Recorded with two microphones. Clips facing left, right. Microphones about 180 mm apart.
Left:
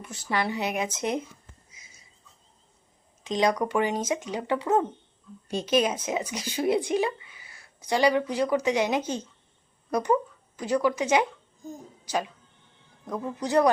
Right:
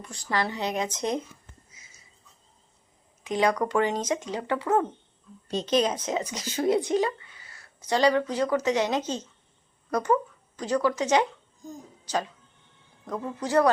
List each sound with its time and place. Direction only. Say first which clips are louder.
0.3 s speech: even; 10° left (ahead or behind)
3.2 s speech: even; 20° left (ahead or behind)